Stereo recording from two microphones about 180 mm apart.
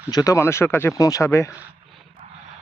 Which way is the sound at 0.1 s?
20° left (ahead or behind).